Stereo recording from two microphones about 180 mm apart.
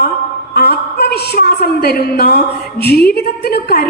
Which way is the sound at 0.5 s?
65° left (ahead or behind).